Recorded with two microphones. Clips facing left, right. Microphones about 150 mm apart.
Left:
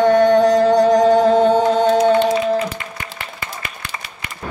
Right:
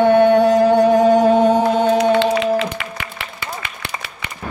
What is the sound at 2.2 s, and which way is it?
Music, 90° right.